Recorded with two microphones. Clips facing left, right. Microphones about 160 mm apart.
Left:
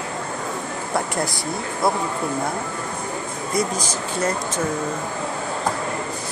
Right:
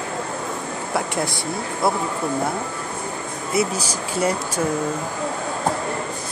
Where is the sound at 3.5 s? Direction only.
10° right (ahead or behind).